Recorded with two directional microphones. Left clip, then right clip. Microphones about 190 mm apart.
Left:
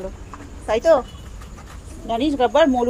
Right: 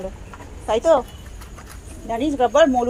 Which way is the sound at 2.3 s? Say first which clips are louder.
Right 1 dB; 5° left (ahead or behind).